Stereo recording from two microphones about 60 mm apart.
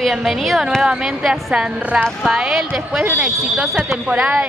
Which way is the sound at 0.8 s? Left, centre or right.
Centre.